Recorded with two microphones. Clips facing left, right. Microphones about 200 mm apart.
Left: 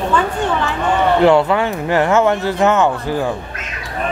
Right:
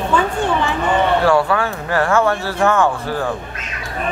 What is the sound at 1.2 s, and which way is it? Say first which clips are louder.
Speech: left 3 dB; 20° left (ahead or behind).